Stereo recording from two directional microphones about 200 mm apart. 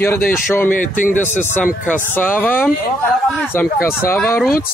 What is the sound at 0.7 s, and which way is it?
Speech, 40° left (ahead or behind).